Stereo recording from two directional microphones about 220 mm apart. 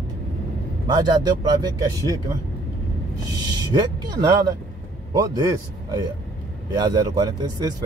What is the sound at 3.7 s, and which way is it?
A man's voice, 20° right (ahead or behind).